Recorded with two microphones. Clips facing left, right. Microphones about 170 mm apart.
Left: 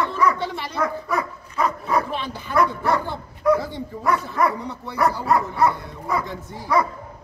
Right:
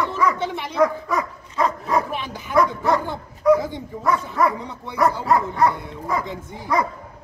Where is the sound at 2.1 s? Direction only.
15° right (ahead or behind).